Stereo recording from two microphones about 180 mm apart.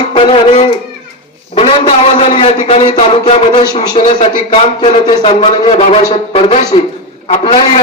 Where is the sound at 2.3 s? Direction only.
30° left (ahead or behind).